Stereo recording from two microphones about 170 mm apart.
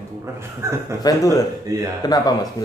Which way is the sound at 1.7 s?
20° right (ahead or behind).